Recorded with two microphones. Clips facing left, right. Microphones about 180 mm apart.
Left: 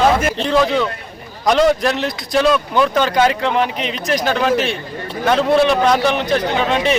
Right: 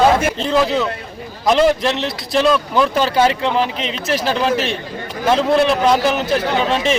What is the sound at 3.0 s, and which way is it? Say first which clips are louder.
Speech: even; 30° right (ahead or behind).